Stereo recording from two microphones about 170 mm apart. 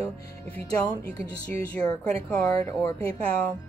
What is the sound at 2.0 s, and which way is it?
A woman's voice, 10° left (ahead or behind).